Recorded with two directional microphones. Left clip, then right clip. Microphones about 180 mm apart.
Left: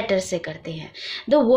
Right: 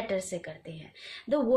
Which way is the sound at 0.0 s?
25° left (ahead or behind).